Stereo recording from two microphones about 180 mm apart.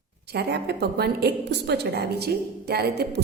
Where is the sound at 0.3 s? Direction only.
65° right (ahead or behind).